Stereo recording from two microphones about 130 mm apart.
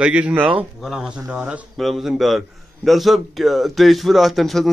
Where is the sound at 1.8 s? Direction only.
Centre (ahead or behind).